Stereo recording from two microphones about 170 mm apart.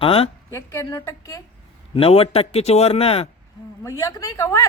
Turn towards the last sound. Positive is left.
turn(degrees=15)  # may be behind; listen again after turning